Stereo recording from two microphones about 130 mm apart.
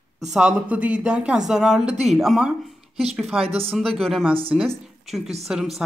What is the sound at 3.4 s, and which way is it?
Speech, 50° right (ahead or behind).